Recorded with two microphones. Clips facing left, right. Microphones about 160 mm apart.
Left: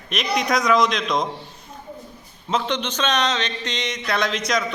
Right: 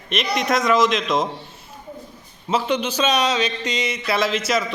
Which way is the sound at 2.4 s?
5° right (ahead or behind).